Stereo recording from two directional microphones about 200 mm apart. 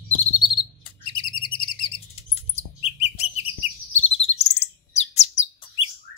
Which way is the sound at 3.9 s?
30° left (ahead or behind).